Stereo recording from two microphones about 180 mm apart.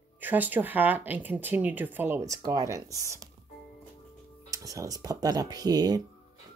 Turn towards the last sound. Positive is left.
turn(degrees=-20)  # may be behind; listen again after turning